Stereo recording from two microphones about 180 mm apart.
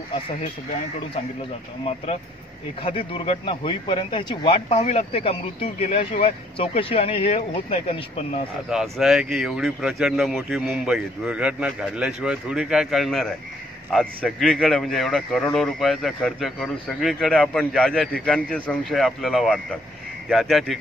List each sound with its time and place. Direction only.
2.8 s speech: 30° left (ahead or behind)
8.9 s a man's voice: centre (ahead or behind)